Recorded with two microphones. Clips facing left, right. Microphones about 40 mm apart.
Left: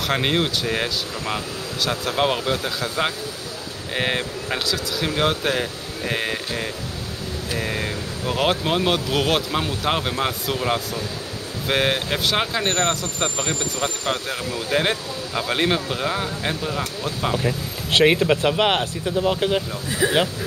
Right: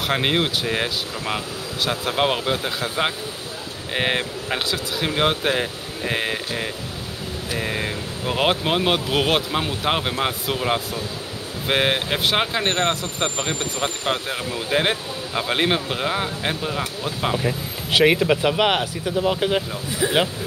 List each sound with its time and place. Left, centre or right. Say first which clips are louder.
0.0 s speech: even; centre
17.4 s speech: even; centre